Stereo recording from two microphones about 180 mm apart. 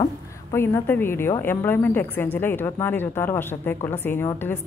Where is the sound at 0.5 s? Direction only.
15° left (ahead or behind).